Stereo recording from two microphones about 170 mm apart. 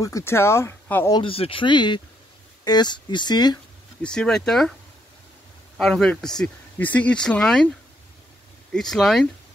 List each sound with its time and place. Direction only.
0.0 s speech: 15° left (ahead or behind)
1.1 s speech: 35° left (ahead or behind)
4.0 s speech: 5° left (ahead or behind)
5.8 s speech: 5° left (ahead or behind)
8.7 s speech: centre (ahead or behind)